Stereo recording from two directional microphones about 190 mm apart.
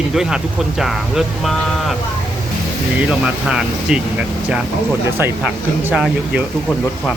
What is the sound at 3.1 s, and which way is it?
Speech, 5° right (ahead or behind).